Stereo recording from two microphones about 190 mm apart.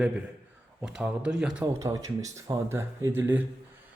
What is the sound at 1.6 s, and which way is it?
Speech, 15° right (ahead or behind).